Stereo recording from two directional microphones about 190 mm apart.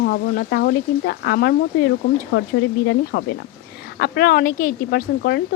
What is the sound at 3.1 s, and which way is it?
Speech, 70° left (ahead or behind).